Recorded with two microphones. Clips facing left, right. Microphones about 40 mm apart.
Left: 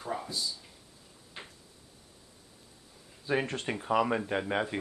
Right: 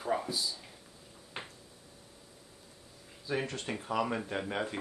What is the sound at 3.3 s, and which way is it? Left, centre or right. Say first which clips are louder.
Speech: left 4 dB; left.